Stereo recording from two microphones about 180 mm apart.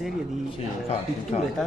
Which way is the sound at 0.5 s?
30° left (ahead or behind).